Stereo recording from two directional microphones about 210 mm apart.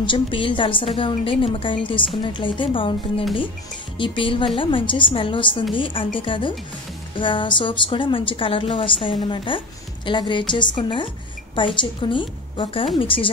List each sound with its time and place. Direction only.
0.0 s a woman's voice: 25° left (ahead or behind)